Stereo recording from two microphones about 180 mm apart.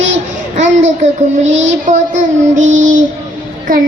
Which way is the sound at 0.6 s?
90° right.